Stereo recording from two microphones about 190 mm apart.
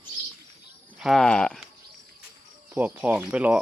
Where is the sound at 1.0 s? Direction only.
Centre (ahead or behind).